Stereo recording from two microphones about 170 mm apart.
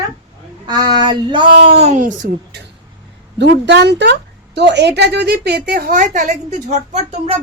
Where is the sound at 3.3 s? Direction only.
90° right; by 5.9 s 65° right (ahead or behind).